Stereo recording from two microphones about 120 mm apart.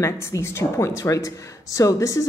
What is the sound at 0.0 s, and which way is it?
Speech, 25° left (ahead or behind).